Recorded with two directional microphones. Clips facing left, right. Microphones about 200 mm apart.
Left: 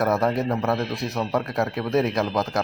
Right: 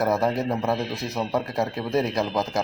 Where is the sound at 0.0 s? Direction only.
Centre (ahead or behind).